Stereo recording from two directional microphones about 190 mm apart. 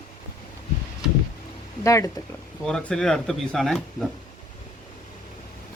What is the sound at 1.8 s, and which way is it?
Speech, 15° left (ahead or behind).